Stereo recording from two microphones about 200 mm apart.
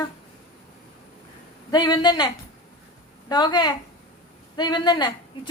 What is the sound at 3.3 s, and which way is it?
A woman's voice, 20° left (ahead or behind).